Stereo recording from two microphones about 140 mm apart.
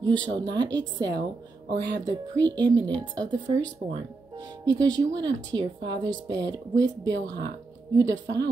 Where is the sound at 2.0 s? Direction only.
30° right (ahead or behind).